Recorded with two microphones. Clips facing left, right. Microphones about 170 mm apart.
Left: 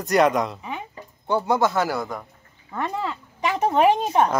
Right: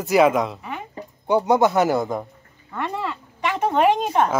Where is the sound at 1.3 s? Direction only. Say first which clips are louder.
Right 4 dB; 20° right (ahead or behind).